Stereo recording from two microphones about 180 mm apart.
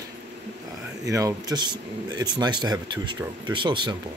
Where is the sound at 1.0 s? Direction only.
20° right (ahead or behind).